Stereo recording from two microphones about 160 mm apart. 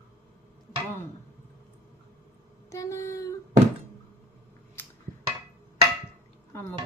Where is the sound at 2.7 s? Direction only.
20° left (ahead or behind).